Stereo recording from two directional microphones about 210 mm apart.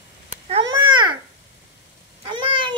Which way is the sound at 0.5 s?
25° right (ahead or behind).